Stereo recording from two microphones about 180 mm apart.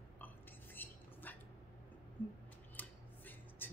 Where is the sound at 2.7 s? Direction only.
10° left (ahead or behind).